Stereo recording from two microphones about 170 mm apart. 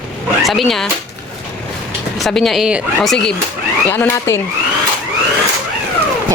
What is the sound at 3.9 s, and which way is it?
Speech, 10° left (ahead or behind).